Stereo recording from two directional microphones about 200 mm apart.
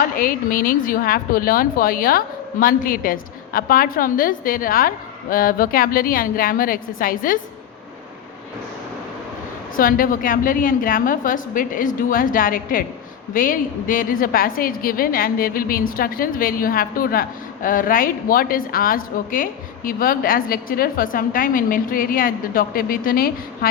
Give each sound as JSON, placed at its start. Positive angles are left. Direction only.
{"t": 0.0, "sound": "a woman's voice", "side_deg": 45}
{"t": 9.7, "sound": "a woman's voice", "side_deg": 45}